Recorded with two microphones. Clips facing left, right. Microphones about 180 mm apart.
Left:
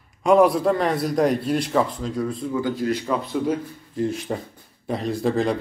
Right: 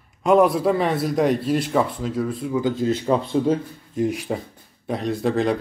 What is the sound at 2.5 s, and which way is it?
Speech, 20° right (ahead or behind).